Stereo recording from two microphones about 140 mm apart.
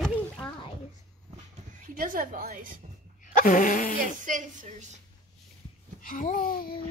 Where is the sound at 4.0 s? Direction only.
70° right (ahead or behind).